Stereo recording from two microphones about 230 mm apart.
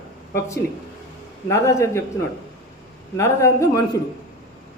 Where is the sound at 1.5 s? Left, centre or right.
Centre.